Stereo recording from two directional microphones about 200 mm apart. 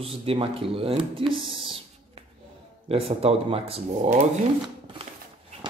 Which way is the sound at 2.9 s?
30° right (ahead or behind).